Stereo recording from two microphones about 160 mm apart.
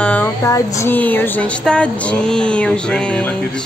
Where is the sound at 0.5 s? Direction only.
20° left (ahead or behind).